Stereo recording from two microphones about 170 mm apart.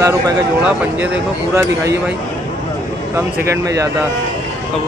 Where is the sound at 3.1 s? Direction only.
15° right (ahead or behind).